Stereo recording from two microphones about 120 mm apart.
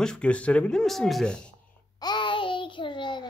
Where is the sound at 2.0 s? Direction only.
40° left (ahead or behind).